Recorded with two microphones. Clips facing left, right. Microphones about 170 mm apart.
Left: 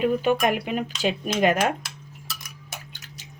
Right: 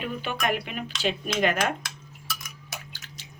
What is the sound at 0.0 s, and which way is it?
Speech, 45° left (ahead or behind).